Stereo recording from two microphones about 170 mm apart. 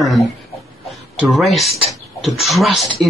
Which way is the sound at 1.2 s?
Centre (ahead or behind).